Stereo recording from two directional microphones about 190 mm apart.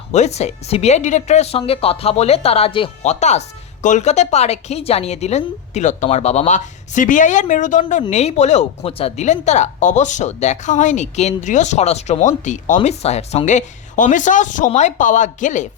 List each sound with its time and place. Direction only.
0.1 s a woman's voice: 35° left (ahead or behind)